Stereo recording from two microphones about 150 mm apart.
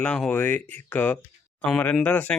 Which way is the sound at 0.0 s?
10° left (ahead or behind).